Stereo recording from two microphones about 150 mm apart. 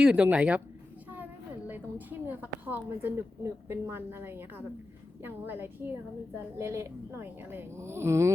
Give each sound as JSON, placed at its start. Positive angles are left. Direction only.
{"t": 0.0, "sound": "a woman's voice", "side_deg": -10}